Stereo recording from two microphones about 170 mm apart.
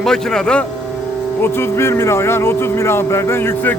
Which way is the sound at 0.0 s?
5° left (ahead or behind).